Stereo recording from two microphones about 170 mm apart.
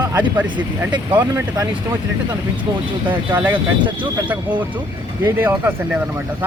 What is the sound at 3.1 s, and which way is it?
Speech, 10° right (ahead or behind).